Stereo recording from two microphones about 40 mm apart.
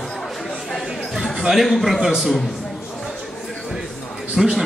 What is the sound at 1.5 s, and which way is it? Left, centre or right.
Speech, centre.